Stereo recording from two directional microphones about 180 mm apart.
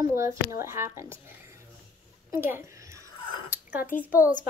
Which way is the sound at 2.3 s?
15° right (ahead or behind).